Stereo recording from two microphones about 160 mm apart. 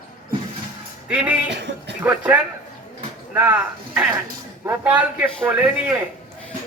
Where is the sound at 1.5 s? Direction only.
90° right.